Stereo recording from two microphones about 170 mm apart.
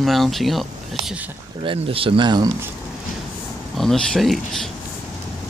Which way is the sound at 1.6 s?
30° right (ahead or behind).